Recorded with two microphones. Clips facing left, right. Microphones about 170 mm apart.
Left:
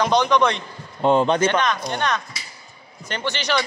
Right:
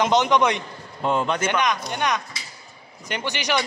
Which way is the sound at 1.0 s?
30° left (ahead or behind).